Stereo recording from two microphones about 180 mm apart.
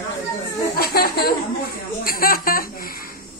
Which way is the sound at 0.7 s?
55° left (ahead or behind).